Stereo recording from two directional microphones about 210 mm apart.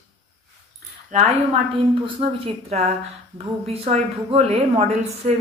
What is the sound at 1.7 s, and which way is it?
A woman's voice, 25° right (ahead or behind).